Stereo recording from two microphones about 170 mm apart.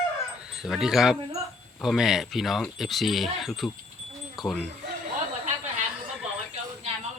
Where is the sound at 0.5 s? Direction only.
Centre (ahead or behind).